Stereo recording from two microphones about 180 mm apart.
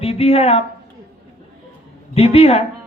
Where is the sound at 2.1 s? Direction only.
35° left (ahead or behind).